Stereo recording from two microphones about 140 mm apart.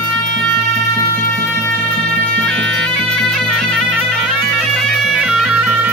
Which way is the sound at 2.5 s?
5° left (ahead or behind).